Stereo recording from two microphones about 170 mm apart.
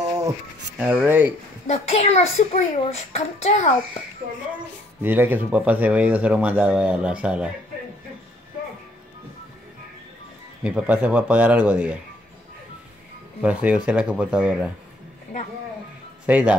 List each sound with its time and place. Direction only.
0.7 s speech: 10° right (ahead or behind)
1.7 s a child's voice: 35° left (ahead or behind)
5.0 s speech: 10° right (ahead or behind)
10.6 s speech: 10° right (ahead or behind)
13.4 s speech: 5° right (ahead or behind)
16.3 s speech: 5° right (ahead or behind)